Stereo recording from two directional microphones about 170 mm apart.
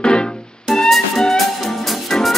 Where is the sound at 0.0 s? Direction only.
5° left (ahead or behind).